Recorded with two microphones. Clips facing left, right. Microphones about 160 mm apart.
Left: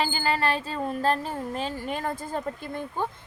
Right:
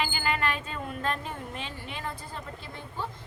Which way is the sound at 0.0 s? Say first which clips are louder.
Left 4 dB; 35° left (ahead or behind).